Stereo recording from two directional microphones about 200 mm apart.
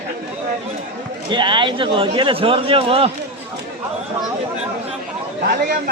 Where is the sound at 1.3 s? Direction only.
25° right (ahead or behind).